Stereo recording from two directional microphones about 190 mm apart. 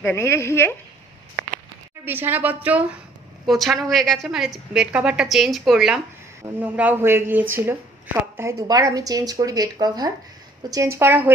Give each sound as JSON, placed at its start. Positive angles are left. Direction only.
{"t": 0.0, "sound": "speech", "side_deg": 10}
{"t": 2.0, "sound": "a woman's voice", "side_deg": -10}